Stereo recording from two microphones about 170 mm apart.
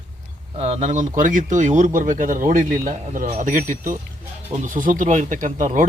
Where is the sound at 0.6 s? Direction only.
40° right (ahead or behind).